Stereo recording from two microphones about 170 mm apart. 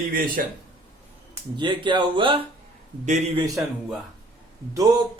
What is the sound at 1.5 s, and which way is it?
Speech, 30° right (ahead or behind).